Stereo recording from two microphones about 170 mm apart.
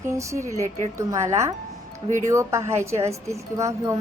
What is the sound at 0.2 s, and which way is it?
A woman's voice, 15° right (ahead or behind).